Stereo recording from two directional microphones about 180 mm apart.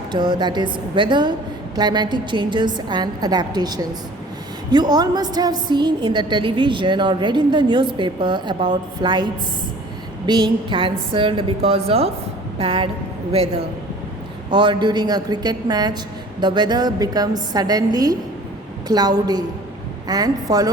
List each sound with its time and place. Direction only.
0.1 s a woman's voice: 25° right (ahead or behind)